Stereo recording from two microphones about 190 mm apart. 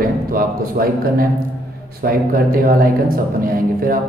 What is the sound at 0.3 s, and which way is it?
A man's voice, 50° right (ahead or behind).